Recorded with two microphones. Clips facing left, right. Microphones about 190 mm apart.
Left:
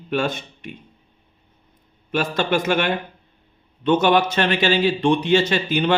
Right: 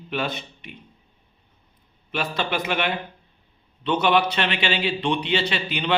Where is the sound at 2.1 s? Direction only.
45° left (ahead or behind).